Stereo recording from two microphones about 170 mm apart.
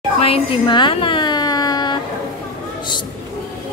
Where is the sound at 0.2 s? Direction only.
35° left (ahead or behind).